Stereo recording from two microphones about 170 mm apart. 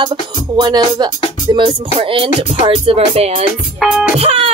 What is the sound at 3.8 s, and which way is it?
Music, centre (ahead or behind).